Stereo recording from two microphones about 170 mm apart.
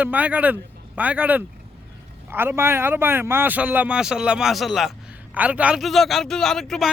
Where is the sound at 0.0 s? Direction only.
10° right (ahead or behind).